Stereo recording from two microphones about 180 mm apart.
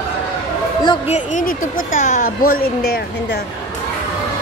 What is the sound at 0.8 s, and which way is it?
Speech, 40° left (ahead or behind).